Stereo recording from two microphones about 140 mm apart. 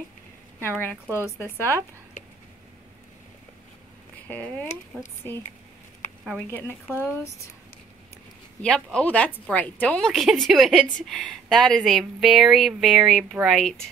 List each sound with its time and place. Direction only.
0.6 s a woman's voice: 15° left (ahead or behind)
1.4 s speech: 20° right (ahead or behind)
4.9 s speech: 5° right (ahead or behind)
8.6 s speech: 5° left (ahead or behind)